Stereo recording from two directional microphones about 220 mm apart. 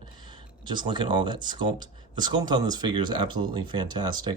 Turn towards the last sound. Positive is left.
turn(degrees=-20)  # may be behind; listen again after turning